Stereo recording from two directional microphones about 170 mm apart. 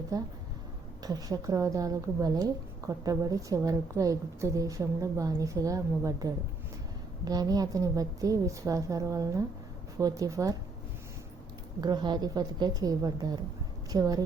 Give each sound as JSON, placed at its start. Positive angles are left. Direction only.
{"t": 0.1, "sound": "a woman's voice", "side_deg": -20}
{"t": 11.8, "sound": "a woman's voice", "side_deg": -25}